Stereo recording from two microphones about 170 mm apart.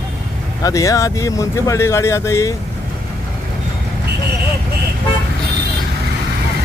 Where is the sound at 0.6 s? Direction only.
20° left (ahead or behind).